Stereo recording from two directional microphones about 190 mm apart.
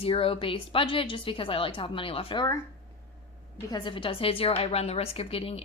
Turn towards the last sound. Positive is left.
turn(degrees=30)  # may be behind; listen again after turning